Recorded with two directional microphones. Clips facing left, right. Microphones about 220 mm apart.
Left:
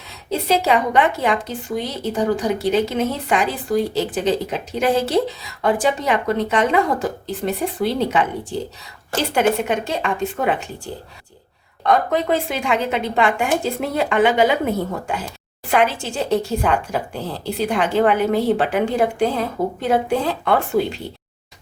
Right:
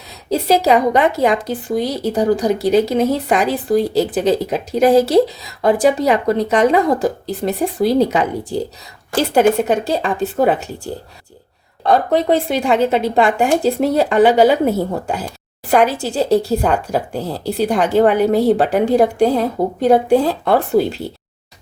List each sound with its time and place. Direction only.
0.3 s a woman's voice: 40° right (ahead or behind)
9.6 s a woman's voice: 35° right (ahead or behind)
11.9 s a woman's voice: 35° right (ahead or behind)